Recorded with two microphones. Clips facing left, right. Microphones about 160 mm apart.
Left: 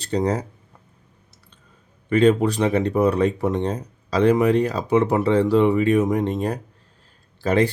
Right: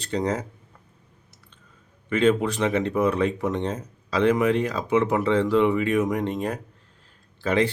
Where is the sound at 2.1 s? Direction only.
40° left (ahead or behind).